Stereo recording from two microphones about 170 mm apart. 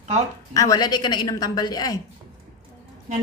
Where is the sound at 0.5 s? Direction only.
20° left (ahead or behind).